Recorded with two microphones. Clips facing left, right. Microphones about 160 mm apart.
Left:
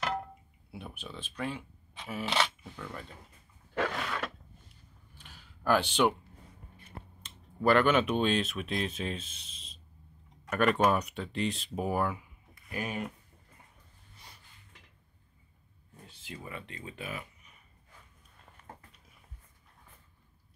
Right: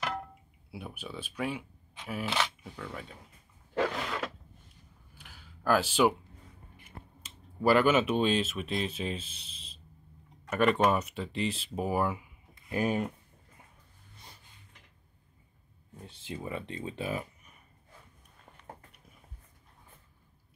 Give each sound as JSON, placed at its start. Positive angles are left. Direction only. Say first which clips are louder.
{"t": 0.7, "sound": "speech", "louder": "right 2 dB", "side_deg": -5}
{"t": 3.7, "sound": "a sound", "louder": "right 2 dB", "side_deg": -20}
{"t": 5.1, "sound": "a sound", "louder": "right 1 dB", "side_deg": -5}
{"t": 6.8, "sound": "speech", "louder": "left 1 dB", "side_deg": -5}
{"t": 12.5, "sound": "speech", "louder": "right 7 dB", "side_deg": -25}
{"t": 16.3, "sound": "speech", "louder": "right 6 dB", "side_deg": -25}